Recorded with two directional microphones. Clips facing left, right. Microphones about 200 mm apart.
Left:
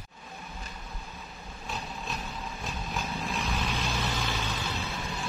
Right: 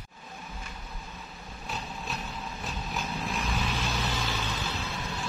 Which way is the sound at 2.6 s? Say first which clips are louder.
Even; centre (ahead or behind).